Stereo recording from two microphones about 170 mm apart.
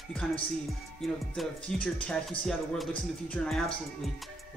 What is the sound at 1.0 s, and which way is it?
Speech, centre (ahead or behind).